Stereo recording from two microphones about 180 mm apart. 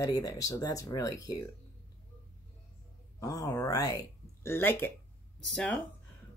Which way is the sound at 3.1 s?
20° left (ahead or behind).